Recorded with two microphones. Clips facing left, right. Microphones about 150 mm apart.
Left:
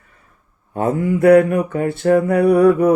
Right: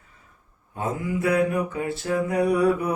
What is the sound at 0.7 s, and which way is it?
Mantra, 60° left (ahead or behind).